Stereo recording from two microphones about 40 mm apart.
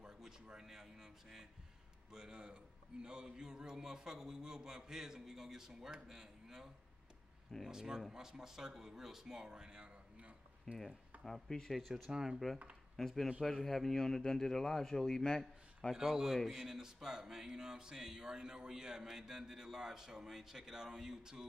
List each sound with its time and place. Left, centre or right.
0.0 s a sound: centre
2.1 s speech: right
10.7 s a man's voice: centre
12.1 s speech: centre
12.9 s a man's voice: centre
15.9 s speech: centre
16.3 s speech: centre